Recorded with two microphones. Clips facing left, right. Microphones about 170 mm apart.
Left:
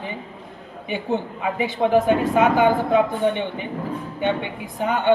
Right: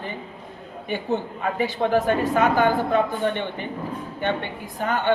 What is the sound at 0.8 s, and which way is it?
Speech, 15° left (ahead or behind).